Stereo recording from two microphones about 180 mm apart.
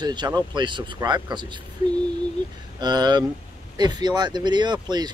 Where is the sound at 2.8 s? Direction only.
25° right (ahead or behind).